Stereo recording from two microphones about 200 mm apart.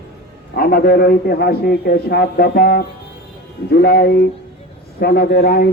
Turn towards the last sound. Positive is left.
turn(degrees=50)  # may be behind; listen again after turning